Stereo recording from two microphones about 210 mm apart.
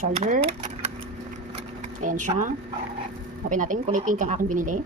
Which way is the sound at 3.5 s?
40° right (ahead or behind).